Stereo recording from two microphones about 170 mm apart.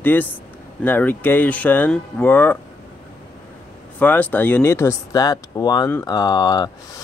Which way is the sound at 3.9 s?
10° left (ahead or behind).